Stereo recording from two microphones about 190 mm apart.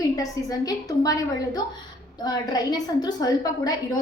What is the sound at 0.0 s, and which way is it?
A woman's voice, 20° left (ahead or behind).